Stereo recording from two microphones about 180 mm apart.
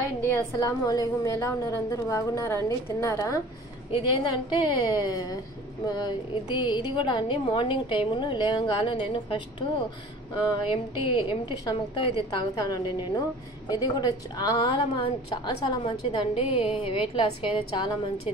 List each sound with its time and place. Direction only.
0.3 s a woman's voice: 20° left (ahead or behind)